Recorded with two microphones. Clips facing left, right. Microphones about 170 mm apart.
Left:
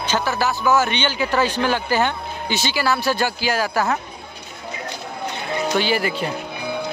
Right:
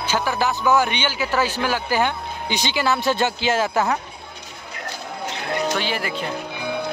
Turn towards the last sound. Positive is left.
turn(degrees=0)  # may be behind; listen again after turning